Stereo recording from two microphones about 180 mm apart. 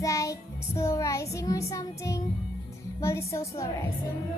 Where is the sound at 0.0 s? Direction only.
15° left (ahead or behind).